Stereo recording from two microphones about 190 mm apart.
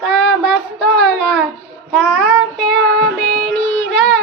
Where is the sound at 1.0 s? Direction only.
5° left (ahead or behind).